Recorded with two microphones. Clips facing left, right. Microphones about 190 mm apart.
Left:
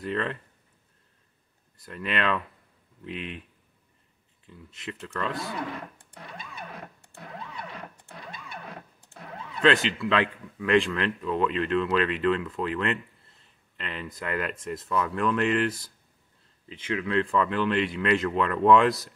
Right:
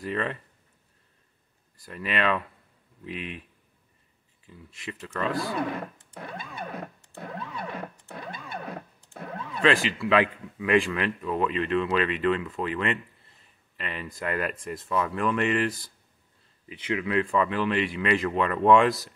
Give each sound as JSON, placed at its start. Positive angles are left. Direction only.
{"t": 0.0, "sound": "a man's voice", "side_deg": -5}
{"t": 1.9, "sound": "a man's voice", "side_deg": 0}
{"t": 4.5, "sound": "a man's voice", "side_deg": 0}
{"t": 7.5, "sound": "a sound", "side_deg": -55}
{"t": 9.6, "sound": "a man's voice", "side_deg": 0}
{"t": 16.6, "sound": "a man's voice", "side_deg": -10}